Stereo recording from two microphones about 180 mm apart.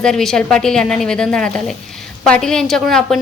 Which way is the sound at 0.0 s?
Centre (ahead or behind).